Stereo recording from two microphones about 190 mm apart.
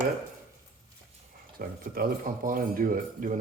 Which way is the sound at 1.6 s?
50° right (ahead or behind).